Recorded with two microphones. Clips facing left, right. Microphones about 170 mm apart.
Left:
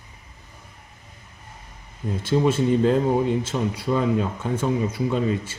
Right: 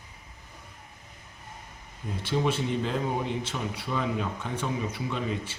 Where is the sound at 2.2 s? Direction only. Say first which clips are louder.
Left 7 dB; 45° left (ahead or behind).